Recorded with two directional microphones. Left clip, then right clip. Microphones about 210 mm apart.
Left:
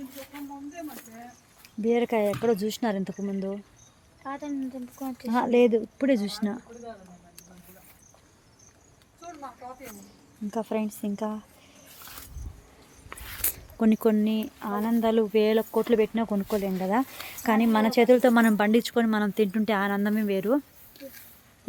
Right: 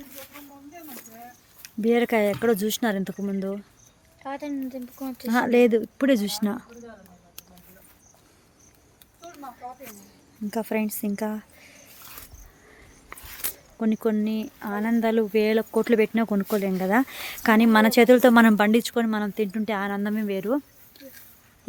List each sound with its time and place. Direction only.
1.6 s speech: 30° right (ahead or behind)
4.2 s speech: 45° right (ahead or behind)
5.2 s speech: 25° right (ahead or behind)
10.5 s speech: 20° right (ahead or behind)
11.9 s vehicle: centre (ahead or behind)
13.1 s a sound: 5° left (ahead or behind)
14.7 s speech: 10° right (ahead or behind)
15.7 s speech: 25° right (ahead or behind); by 21.2 s centre (ahead or behind)